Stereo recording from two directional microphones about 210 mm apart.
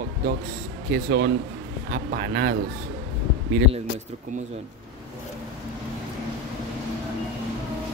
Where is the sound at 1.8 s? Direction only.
45° right (ahead or behind).